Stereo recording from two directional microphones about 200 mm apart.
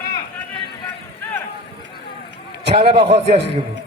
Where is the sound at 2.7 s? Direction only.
30° right (ahead or behind).